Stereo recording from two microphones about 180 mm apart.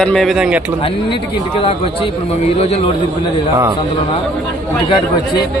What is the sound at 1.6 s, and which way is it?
A man's voice, 30° left (ahead or behind).